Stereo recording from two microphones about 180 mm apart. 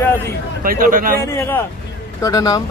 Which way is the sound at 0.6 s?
50° right (ahead or behind).